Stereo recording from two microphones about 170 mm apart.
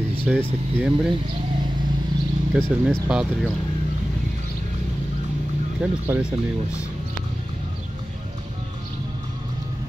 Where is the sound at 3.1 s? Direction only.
5° right (ahead or behind).